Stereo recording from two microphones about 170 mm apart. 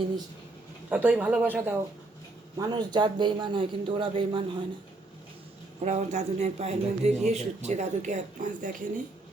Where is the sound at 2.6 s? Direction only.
25° right (ahead or behind).